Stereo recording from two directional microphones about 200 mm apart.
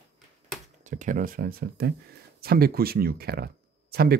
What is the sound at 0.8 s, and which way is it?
Speech, 40° right (ahead or behind).